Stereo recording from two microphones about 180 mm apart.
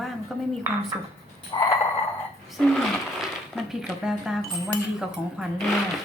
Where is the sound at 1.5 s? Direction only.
20° left (ahead or behind).